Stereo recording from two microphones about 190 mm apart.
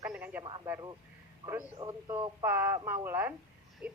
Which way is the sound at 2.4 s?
10° right (ahead or behind).